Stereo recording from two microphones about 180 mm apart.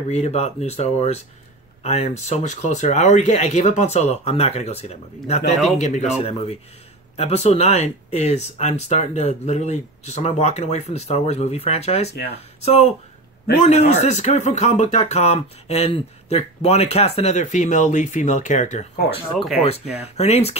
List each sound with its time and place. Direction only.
0.1 s speech: 35° left (ahead or behind)
20.0 s speech: 35° left (ahead or behind)